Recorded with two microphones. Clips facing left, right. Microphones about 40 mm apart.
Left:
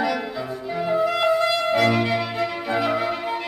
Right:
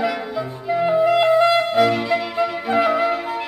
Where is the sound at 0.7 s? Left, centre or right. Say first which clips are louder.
Right 6 dB; centre.